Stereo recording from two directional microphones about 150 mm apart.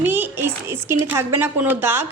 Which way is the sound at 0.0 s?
15° right (ahead or behind).